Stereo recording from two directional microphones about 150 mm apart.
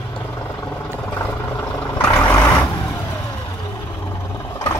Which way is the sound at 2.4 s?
30° left (ahead or behind).